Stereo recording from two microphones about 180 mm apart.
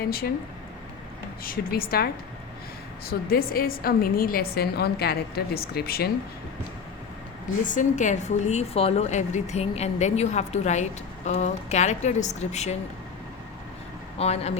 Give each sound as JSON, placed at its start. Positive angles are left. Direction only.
{"t": 0.0, "sound": "a woman's voice", "side_deg": 55}
{"t": 1.5, "sound": "a woman's voice", "side_deg": 55}
{"t": 3.1, "sound": "a woman's voice", "side_deg": 55}
{"t": 7.6, "sound": "a woman's voice", "side_deg": 45}
{"t": 14.2, "sound": "a woman's voice", "side_deg": 35}